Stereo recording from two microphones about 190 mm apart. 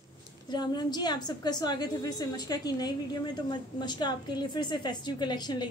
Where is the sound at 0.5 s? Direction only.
20° left (ahead or behind).